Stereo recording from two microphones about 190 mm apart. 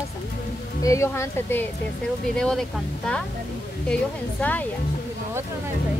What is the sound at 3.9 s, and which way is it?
Speech, 10° left (ahead or behind).